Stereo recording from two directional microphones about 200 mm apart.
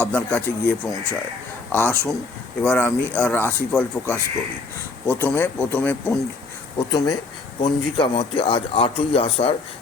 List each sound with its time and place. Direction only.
0.0 s a man's voice: 5° left (ahead or behind); by 9.6 s 30° left (ahead or behind)